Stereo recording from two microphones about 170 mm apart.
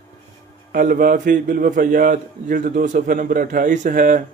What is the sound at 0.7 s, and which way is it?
A man's voice, 55° right (ahead or behind).